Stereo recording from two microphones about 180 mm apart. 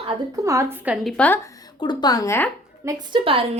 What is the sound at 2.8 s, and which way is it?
Speech, 30° right (ahead or behind).